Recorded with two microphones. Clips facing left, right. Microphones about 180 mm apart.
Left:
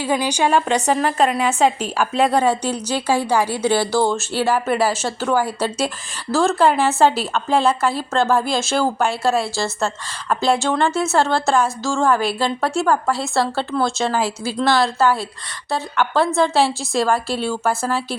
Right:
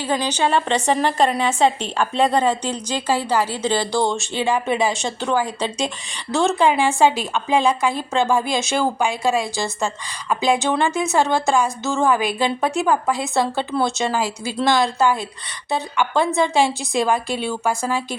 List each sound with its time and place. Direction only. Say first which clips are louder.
0.0 s a woman's voice: left 2 dB; 10° left (ahead or behind)
6.5 s a woman's voice: left 1 dB; 15° right (ahead or behind)
17.0 s a woman's voice: left 1 dB; 15° right (ahead or behind)